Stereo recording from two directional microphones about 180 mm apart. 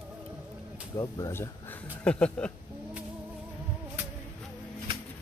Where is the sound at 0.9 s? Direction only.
15° left (ahead or behind).